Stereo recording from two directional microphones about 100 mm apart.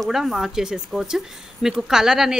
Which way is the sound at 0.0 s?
5° right (ahead or behind).